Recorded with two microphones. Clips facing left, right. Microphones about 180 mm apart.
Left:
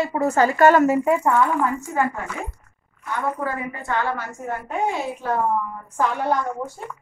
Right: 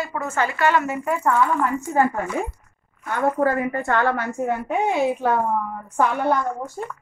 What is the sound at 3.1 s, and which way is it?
A woman's voice, 50° right (ahead or behind).